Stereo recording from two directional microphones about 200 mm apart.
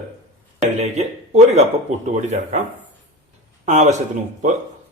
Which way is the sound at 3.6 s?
35° right (ahead or behind).